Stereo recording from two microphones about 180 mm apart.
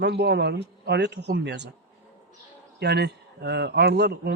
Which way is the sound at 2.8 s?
65° right (ahead or behind).